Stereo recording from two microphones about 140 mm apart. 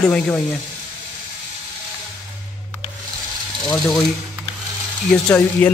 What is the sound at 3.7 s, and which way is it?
Speech, centre (ahead or behind).